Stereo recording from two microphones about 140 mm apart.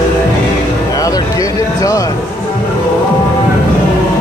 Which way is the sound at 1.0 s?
25° left (ahead or behind).